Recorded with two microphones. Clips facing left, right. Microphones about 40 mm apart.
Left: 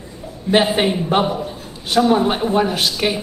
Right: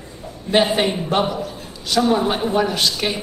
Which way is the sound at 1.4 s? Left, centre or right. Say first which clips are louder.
Left 1 dB; left.